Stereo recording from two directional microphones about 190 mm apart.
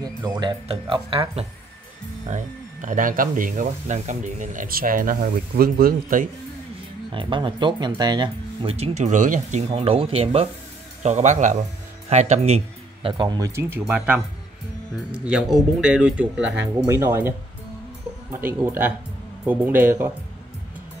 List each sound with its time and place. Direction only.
0.0 s speech: 20° right (ahead or behind)
2.2 s speech: 40° right (ahead or behind)
7.1 s speech: 25° right (ahead or behind); by 9.7 s 40° right (ahead or behind)
9.7 s speech: 30° right (ahead or behind); by 17.3 s 10° right (ahead or behind)
18.3 s speech: 10° right (ahead or behind)